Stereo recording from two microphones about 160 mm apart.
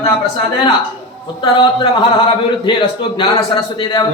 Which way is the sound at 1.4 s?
30° left (ahead or behind).